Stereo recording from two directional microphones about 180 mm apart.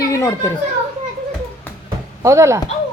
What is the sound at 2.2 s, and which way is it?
Speech, 15° right (ahead or behind).